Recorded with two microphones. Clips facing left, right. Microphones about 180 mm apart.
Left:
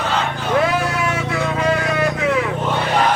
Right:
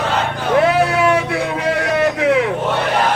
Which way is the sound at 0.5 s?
60° right (ahead or behind).